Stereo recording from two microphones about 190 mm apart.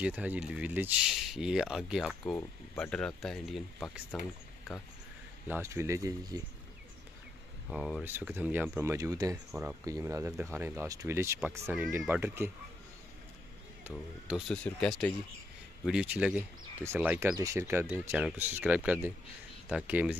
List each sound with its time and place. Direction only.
0.0 s speech: 5° right (ahead or behind)
5.5 s speech: 15° right (ahead or behind)
7.7 s speech: centre (ahead or behind); by 9.4 s 15° right (ahead or behind)
9.5 s speech: 5° right (ahead or behind)
9.8 s speech: 15° right (ahead or behind)
13.8 s speech: 5° right (ahead or behind)
14.5 s speech: 5° left (ahead or behind)